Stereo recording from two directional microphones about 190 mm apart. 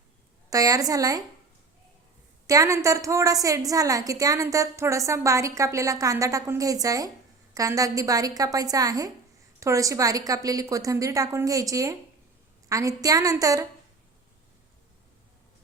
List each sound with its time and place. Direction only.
0.5 s a woman's voice: 20° right (ahead or behind)
2.5 s a woman's voice: 15° right (ahead or behind)